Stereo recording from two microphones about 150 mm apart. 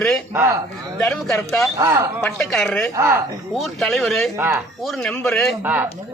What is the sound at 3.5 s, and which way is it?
Speech, centre (ahead or behind).